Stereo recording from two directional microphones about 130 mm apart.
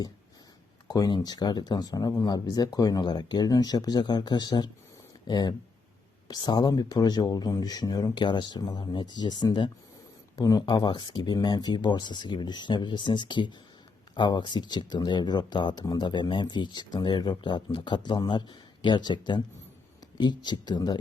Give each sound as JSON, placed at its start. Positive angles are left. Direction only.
{"t": 0.9, "sound": "speech", "side_deg": 30}